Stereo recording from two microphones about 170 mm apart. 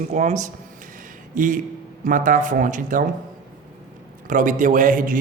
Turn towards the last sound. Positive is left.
turn(degrees=-50)  # may be behind; listen again after turning